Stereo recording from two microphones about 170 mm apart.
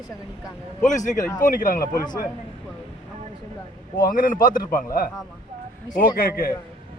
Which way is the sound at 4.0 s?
55° left (ahead or behind).